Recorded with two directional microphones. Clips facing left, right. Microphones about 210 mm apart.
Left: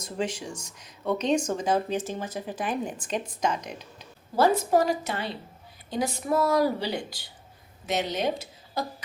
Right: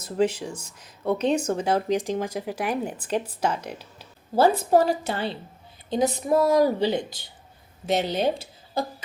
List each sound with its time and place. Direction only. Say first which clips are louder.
0.0 s speech: right 7 dB; 5° right (ahead or behind)
4.4 s a woman's voice: right 3 dB; 30° right (ahead or behind)